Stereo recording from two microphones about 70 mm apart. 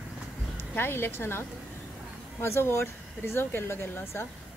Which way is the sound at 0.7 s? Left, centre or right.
Left.